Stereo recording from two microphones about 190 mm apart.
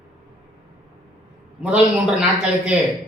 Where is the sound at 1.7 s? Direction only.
5° right (ahead or behind).